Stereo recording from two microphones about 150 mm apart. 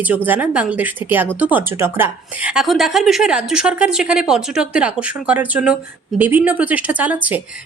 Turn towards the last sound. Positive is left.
turn(degrees=-10)  # may be behind; listen again after turning